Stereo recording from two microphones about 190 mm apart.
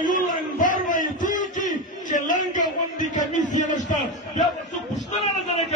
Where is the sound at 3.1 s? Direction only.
40° left (ahead or behind).